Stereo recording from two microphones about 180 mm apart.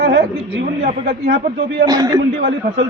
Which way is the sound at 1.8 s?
20° right (ahead or behind).